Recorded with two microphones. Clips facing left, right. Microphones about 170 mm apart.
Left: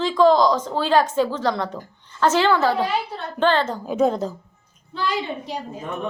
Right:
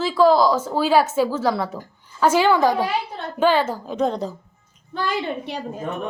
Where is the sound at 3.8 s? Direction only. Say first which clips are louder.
Left 2 dB; 5° left (ahead or behind).